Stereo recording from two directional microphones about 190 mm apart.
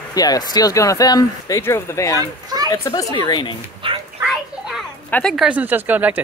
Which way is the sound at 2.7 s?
20° left (ahead or behind).